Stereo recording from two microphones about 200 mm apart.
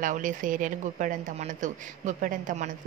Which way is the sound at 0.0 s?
40° right (ahead or behind).